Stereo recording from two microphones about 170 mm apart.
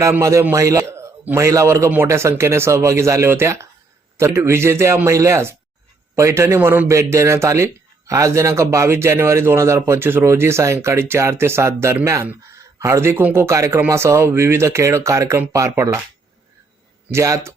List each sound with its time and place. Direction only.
0.0 s a man's voice: 20° right (ahead or behind)
17.1 s a man's voice: 15° right (ahead or behind)